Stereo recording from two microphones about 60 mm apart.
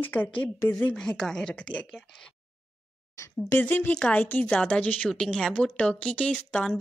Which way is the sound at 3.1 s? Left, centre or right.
Left.